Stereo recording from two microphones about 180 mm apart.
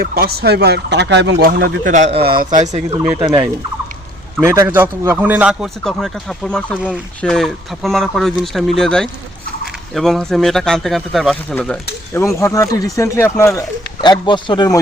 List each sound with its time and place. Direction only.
0.0 s speech: 60° right (ahead or behind)
1.4 s a man's voice: 60° right (ahead or behind); by 2.2 s 40° right (ahead or behind)
2.2 s a man's voice: 55° right (ahead or behind)
2.9 s speech: 10° right (ahead or behind)
4.4 s a man's voice: 15° right (ahead or behind); by 14.8 s 25° left (ahead or behind)